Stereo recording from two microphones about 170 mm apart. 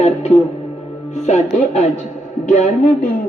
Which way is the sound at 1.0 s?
40° left (ahead or behind).